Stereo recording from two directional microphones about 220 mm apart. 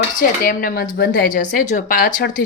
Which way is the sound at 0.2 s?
40° left (ahead or behind).